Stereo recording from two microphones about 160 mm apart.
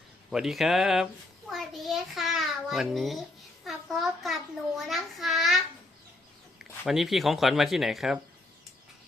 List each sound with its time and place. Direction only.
0.3 s a child's voice: centre (ahead or behind)
6.8 s speech: centre (ahead or behind)